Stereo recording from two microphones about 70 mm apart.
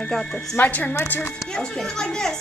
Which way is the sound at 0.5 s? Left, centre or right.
Left.